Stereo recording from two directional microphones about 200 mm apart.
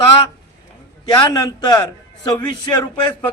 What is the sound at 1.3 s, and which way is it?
A man's voice, 20° left (ahead or behind).